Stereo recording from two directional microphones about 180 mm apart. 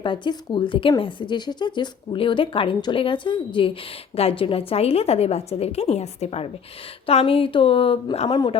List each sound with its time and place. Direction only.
0.0 s a woman's voice: 25° left (ahead or behind)